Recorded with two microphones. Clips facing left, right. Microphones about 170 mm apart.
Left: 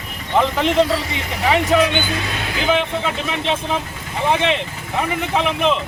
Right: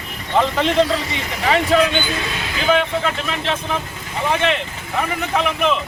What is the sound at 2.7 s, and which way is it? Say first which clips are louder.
Speech: right 2 dB; 20° left (ahead or behind).